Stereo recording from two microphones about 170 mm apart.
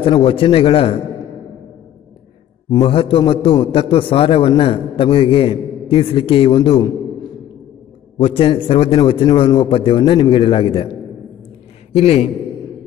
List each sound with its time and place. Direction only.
0.0 s a man's voice: 30° left (ahead or behind)
2.7 s a man's voice: 30° left (ahead or behind)
8.2 s a man's voice: 30° left (ahead or behind)
11.9 s a man's voice: 35° left (ahead or behind)